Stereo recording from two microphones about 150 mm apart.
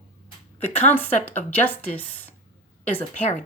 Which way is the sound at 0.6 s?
10° left (ahead or behind).